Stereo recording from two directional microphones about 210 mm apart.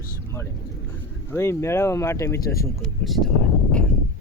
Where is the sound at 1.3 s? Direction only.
10° left (ahead or behind).